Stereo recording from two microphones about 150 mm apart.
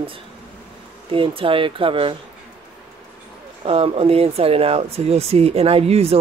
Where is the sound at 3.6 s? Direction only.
40° right (ahead or behind).